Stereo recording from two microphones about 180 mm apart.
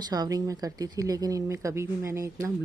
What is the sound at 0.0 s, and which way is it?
Speech, 20° right (ahead or behind).